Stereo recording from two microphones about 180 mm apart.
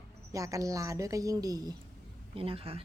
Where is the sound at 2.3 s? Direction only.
30° right (ahead or behind).